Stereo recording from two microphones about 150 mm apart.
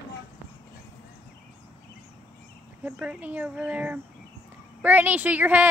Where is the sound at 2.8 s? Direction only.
10° right (ahead or behind).